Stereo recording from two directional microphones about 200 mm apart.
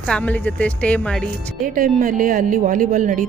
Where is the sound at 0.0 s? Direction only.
5° left (ahead or behind).